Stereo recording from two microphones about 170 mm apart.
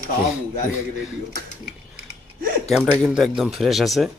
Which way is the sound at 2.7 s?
5° right (ahead or behind).